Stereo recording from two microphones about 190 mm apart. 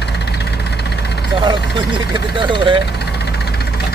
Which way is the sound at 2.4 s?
25° right (ahead or behind).